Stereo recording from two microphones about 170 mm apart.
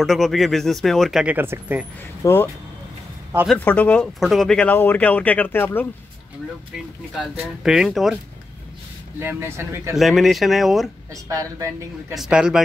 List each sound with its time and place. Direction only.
0.0 s speech: centre (ahead or behind)
2.2 s speech: 15° left (ahead or behind)
7.2 s speech: 5° right (ahead or behind)
9.2 s speech: 15° right (ahead or behind)
9.9 s speech: centre (ahead or behind)
11.2 s a woman's voice: 20° right (ahead or behind)
12.1 s speech: 5° right (ahead or behind)